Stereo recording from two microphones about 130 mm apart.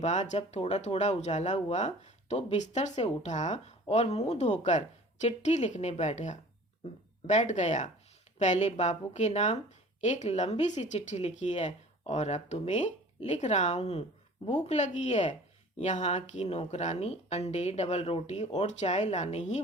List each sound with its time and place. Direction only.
0.0 s a woman's voice: 65° left (ahead or behind)